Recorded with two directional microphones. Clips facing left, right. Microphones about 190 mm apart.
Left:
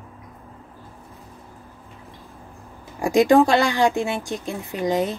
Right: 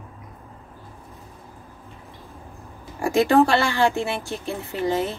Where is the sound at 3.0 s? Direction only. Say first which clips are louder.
Left 2 dB; 15° left (ahead or behind).